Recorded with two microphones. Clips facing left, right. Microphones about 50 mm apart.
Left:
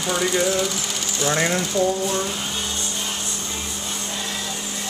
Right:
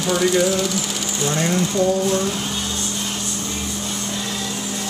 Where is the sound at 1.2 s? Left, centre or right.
Left.